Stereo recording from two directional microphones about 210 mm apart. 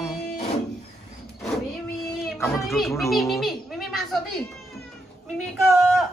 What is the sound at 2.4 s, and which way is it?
Speech, centre (ahead or behind).